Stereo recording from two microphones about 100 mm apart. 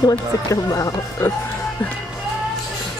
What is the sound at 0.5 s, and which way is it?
Speech, 35° left (ahead or behind).